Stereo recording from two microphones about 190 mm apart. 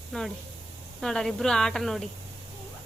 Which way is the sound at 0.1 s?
5° left (ahead or behind).